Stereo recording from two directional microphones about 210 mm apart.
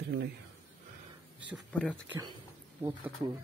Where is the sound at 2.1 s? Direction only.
20° right (ahead or behind).